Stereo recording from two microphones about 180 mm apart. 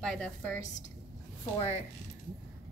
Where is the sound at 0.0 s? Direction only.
5° left (ahead or behind).